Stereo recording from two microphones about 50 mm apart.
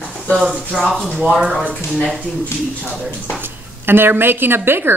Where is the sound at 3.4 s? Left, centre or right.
Right.